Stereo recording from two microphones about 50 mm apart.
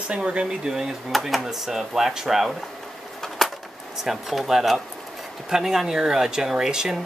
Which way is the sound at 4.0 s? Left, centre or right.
Centre.